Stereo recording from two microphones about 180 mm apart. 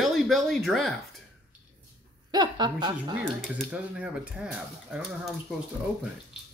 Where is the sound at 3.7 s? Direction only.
5° right (ahead or behind).